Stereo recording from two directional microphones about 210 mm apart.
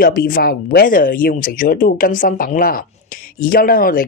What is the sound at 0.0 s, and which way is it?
Speech, 45° left (ahead or behind).